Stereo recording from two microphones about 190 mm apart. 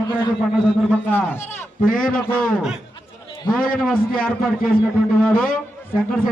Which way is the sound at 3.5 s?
50° left (ahead or behind).